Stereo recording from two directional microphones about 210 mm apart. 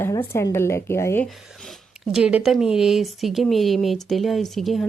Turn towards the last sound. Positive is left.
turn(degrees=0)  # may be behind; listen again after turning